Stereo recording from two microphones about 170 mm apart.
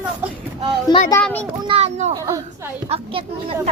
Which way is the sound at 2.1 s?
20° right (ahead or behind).